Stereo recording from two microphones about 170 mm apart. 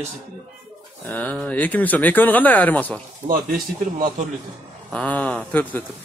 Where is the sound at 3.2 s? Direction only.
55° right (ahead or behind).